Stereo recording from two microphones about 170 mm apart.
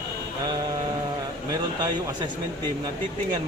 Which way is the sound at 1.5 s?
25° right (ahead or behind).